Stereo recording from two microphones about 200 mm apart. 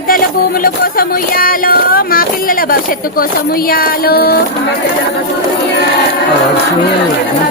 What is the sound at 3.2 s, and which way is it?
Speech, 45° left (ahead or behind).